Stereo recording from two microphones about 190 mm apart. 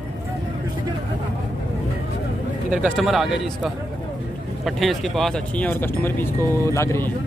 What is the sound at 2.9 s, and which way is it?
Speech, centre (ahead or behind).